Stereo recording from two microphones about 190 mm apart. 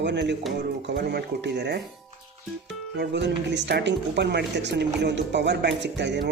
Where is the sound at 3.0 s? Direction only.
65° right (ahead or behind).